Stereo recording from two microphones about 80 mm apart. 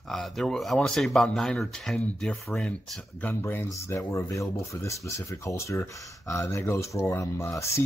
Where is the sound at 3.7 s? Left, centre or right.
Left.